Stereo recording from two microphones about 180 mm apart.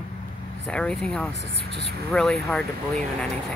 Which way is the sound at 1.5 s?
70° right (ahead or behind).